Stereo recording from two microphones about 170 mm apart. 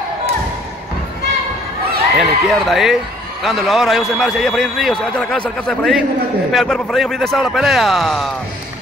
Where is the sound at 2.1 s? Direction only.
Centre (ahead or behind).